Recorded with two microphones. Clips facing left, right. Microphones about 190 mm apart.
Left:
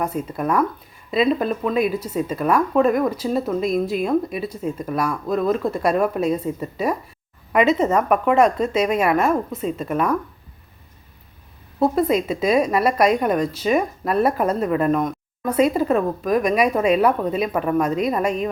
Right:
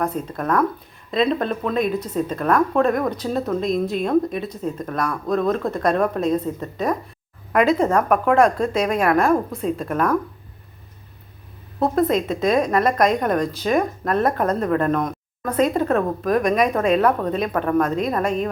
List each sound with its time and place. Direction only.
0.0 s a woman's voice: 10° left (ahead or behind)
11.8 s a woman's voice: 5° left (ahead or behind)